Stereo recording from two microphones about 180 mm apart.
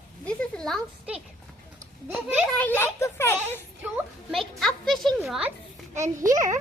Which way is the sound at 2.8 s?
15° left (ahead or behind).